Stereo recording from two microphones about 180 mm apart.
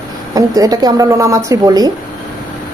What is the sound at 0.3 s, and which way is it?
A woman's voice, 20° right (ahead or behind).